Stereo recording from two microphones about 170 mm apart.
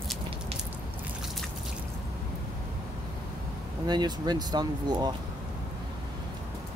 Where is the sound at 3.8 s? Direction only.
25° right (ahead or behind).